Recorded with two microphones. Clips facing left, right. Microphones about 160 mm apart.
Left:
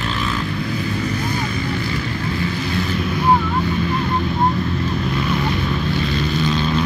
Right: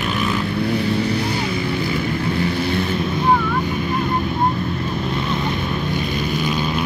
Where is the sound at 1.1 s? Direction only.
70° right (ahead or behind).